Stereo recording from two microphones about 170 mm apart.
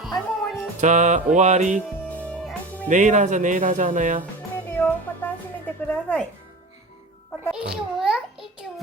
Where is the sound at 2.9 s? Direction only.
45° right (ahead or behind).